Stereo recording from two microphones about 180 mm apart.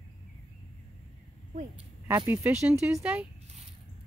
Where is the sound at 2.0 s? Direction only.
15° right (ahead or behind).